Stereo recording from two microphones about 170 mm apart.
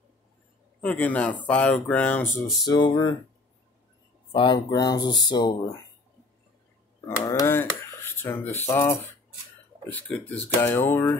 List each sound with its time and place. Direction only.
0.7 s speech: 10° left (ahead or behind)
2.6 s speech: 25° left (ahead or behind)
4.3 s speech: 30° left (ahead or behind)
7.1 s speech: 15° left (ahead or behind)